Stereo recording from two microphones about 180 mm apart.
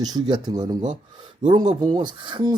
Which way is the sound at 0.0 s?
25° right (ahead or behind).